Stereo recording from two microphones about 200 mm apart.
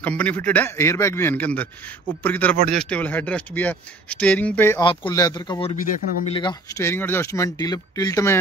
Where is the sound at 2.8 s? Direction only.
5° left (ahead or behind).